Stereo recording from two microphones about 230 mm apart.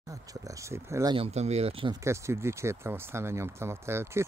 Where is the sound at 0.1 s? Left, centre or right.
Centre.